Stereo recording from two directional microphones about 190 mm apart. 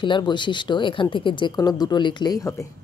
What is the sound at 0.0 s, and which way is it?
Speech, 25° left (ahead or behind).